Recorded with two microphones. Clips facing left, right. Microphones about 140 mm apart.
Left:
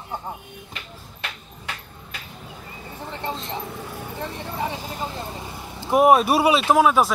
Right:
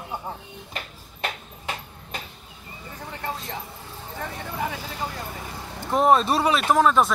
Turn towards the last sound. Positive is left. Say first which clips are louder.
# left 2 dB
turn(degrees=10)  # may be behind; listen again after turning